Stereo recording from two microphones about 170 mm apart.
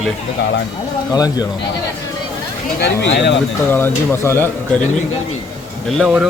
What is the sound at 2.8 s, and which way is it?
Speech, 90° left.